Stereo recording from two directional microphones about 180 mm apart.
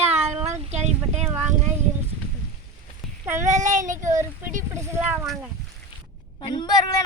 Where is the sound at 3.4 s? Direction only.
40° right (ahead or behind).